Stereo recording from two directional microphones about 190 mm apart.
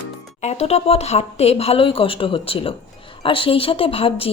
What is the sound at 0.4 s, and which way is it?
Speech, 35° left (ahead or behind).